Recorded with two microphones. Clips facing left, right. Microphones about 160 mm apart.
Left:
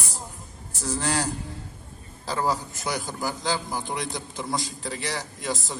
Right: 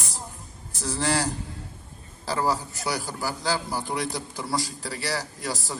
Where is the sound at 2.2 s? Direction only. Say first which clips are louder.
Right 1 dB; 20° left (ahead or behind).